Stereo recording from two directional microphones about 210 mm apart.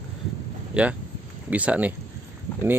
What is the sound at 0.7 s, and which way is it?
Speech, 5° right (ahead or behind).